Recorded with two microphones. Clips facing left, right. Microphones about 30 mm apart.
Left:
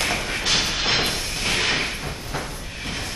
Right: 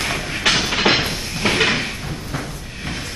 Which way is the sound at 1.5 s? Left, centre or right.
Right.